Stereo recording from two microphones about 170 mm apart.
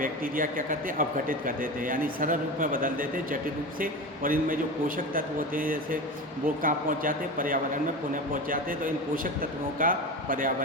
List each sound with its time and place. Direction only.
0.0 s a man's voice: 55° right (ahead or behind)